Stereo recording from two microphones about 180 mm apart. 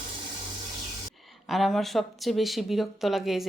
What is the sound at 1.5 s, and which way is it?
A woman's voice, centre (ahead or behind).